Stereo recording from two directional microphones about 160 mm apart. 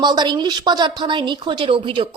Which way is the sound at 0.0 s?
25° right (ahead or behind).